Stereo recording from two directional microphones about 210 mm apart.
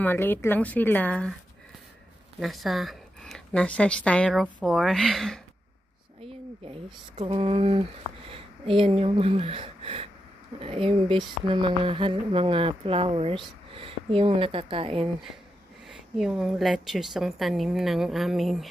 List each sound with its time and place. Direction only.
0.0 s speech: 10° left (ahead or behind)
2.4 s a woman's voice: centre (ahead or behind)
6.2 s speech: 25° right (ahead or behind)
16.2 s a woman's voice: centre (ahead or behind)